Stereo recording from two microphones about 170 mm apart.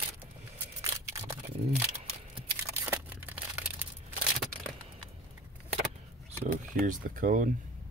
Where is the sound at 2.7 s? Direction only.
15° right (ahead or behind).